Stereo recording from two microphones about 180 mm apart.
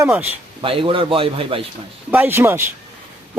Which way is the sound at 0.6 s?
30° right (ahead or behind).